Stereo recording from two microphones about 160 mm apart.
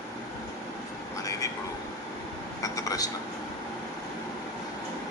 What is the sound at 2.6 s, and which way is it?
Speech, 20° left (ahead or behind).